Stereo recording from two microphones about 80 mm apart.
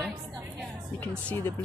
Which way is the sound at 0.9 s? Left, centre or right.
Left.